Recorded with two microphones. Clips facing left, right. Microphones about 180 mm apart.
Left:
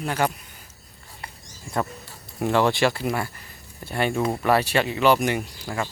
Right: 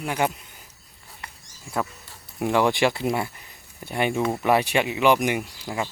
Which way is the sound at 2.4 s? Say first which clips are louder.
Even; 15° right (ahead or behind).